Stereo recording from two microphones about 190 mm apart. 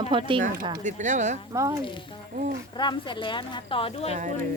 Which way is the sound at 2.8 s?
25° left (ahead or behind).